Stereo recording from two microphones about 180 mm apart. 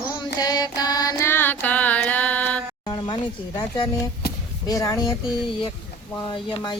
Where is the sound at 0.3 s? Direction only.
20° left (ahead or behind).